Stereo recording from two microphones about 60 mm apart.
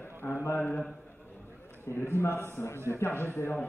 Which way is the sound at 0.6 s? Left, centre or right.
Left.